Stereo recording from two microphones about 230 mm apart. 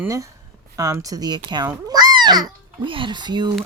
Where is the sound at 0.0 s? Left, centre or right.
Centre.